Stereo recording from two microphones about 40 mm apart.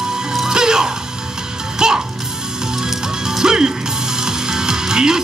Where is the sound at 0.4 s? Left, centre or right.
Centre.